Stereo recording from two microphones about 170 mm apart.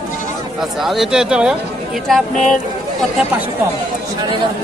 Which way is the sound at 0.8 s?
Centre (ahead or behind).